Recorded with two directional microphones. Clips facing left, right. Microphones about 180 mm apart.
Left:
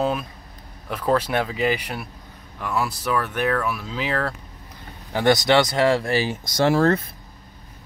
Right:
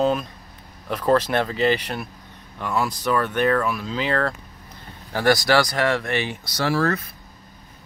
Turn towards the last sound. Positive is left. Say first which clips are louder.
# left 4 dB
turn(degrees=25)  # may be behind; listen again after turning